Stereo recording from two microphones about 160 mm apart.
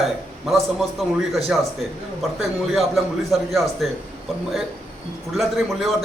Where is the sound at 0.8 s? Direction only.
Centre (ahead or behind).